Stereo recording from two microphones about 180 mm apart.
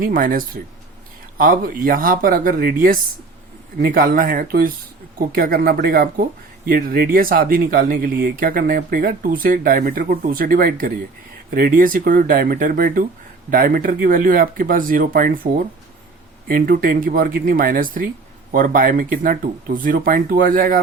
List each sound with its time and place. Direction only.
0.0 s speech: 50° right (ahead or behind)